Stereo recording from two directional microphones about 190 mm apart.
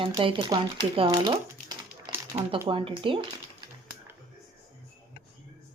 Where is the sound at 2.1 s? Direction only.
25° right (ahead or behind).